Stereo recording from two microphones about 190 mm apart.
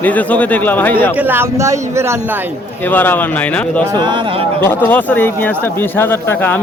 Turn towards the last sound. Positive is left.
turn(degrees=10)  # may be behind; listen again after turning